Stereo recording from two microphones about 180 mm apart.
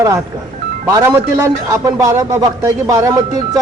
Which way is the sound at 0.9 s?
20° right (ahead or behind).